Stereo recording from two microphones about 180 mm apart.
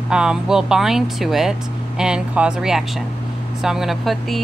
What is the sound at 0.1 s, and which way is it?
Speech, 5° right (ahead or behind).